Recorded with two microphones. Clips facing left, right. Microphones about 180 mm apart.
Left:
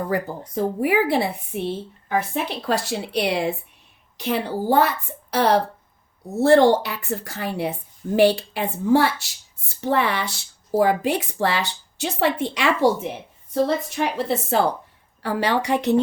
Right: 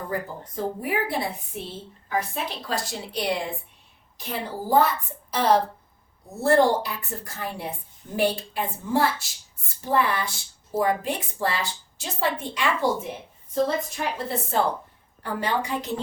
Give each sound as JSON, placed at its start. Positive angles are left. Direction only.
{"t": 0.1, "sound": "a woman's voice", "side_deg": 80}
{"t": 10.8, "sound": "a woman's voice", "side_deg": 80}
{"t": 15.2, "sound": "a woman's voice", "side_deg": 90}